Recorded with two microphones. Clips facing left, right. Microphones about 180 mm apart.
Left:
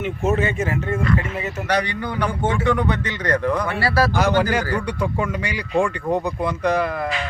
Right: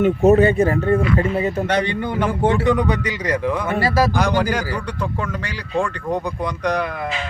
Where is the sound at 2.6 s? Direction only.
15° right (ahead or behind).